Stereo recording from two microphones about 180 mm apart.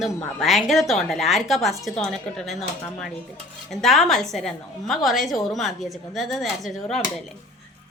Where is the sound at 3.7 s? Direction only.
Centre (ahead or behind).